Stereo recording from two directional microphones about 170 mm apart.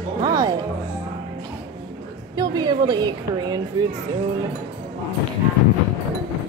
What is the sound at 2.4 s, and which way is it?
A woman's voice, 25° right (ahead or behind).